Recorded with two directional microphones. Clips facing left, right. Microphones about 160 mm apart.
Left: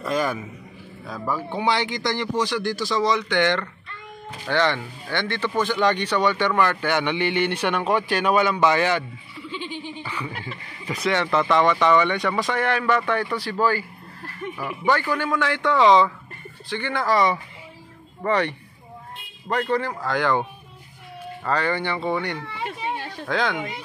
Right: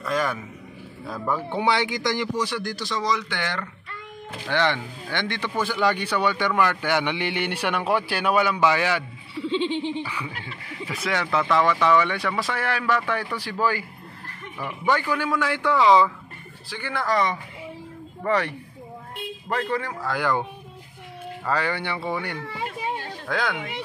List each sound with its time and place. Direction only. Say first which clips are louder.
0.0 s a sound: left 1 dB; 20° left (ahead or behind)
1.0 s speech: right 1 dB; centre (ahead or behind)
1.6 s a man's voice: even; 15° right (ahead or behind)
2.6 s a man's voice: left 5 dB; centre (ahead or behind)
9.4 s speech: right 9 dB; 25° right (ahead or behind)
10.0 s a man's voice: left 2 dB; 10° right (ahead or behind)
15.3 s a man's voice: left 2 dB; 5° right (ahead or behind)
19.5 s a man's voice: left 3 dB; 5° right (ahead or behind)
21.5 s a man's voice: left 2 dB; 10° right (ahead or behind)